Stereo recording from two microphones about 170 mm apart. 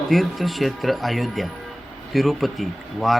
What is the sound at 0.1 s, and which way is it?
Speech, centre (ahead or behind).